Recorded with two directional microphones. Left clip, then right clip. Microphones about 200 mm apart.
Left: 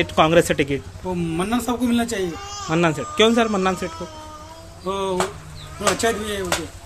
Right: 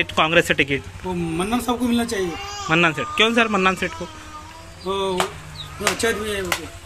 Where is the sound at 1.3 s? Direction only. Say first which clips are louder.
Right 1 dB; 25° left (ahead or behind).